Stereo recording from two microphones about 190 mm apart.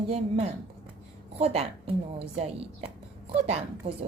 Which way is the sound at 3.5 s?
35° right (ahead or behind).